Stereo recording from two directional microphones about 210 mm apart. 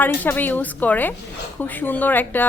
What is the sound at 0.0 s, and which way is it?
A woman's voice, 10° left (ahead or behind).